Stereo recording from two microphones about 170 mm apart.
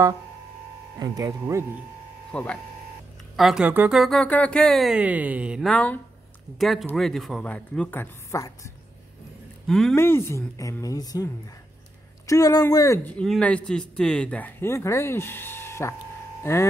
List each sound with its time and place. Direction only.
0.9 s speech: 20° right (ahead or behind)
2.3 s speech: 5° left (ahead or behind)
3.3 s speech: 5° right (ahead or behind); by 8.5 s 15° left (ahead or behind)
9.7 s speech: centre (ahead or behind)
9.9 s a woman's voice: 15° left (ahead or behind)
12.3 s a woman's voice: 20° left (ahead or behind)
13.2 s speech: 5° left (ahead or behind)